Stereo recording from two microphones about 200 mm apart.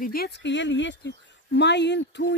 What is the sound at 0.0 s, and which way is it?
Speech, 50° left (ahead or behind).